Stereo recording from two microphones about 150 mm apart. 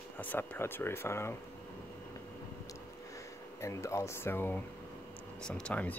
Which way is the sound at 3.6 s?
20° left (ahead or behind).